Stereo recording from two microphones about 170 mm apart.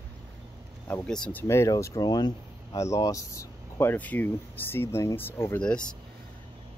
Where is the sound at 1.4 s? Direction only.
15° left (ahead or behind).